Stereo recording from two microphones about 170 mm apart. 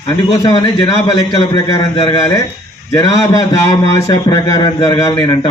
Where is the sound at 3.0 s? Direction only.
20° left (ahead or behind).